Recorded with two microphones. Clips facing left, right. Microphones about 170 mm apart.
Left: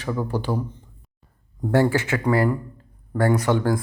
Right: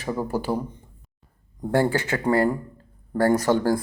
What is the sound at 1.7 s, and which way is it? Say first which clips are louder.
A man's voice: left 2 dB; 30° right (ahead or behind).